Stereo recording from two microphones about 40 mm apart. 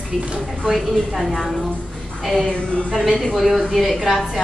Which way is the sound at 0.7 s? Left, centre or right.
Centre.